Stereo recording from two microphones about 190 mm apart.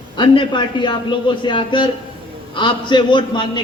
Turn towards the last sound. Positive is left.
turn(degrees=25)  # may be behind; listen again after turning